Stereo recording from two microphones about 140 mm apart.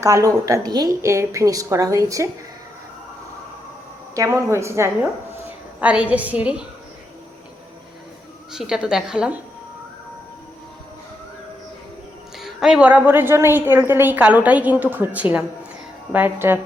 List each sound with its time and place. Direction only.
0.0 s a woman's voice: 25° right (ahead or behind)
4.1 s a woman's voice: 20° right (ahead or behind)
5.8 s a woman's voice: 10° right (ahead or behind)
8.5 s a woman's voice: 5° right (ahead or behind)
12.4 s a woman's voice: centre (ahead or behind)